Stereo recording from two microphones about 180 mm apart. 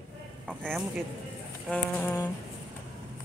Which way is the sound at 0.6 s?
Centre (ahead or behind).